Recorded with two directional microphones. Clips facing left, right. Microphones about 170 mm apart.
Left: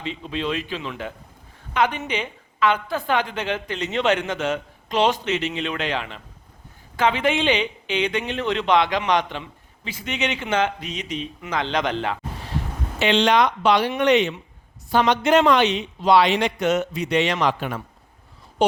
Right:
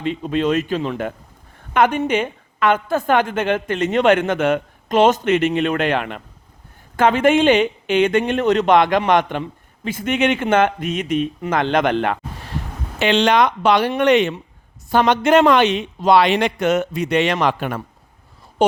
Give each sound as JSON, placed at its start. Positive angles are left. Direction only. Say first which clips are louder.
{"t": 0.0, "sound": "a woman's voice", "louder": "right 8 dB", "side_deg": -50}